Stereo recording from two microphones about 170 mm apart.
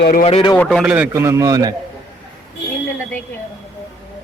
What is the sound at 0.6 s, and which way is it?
Speech, 5° left (ahead or behind).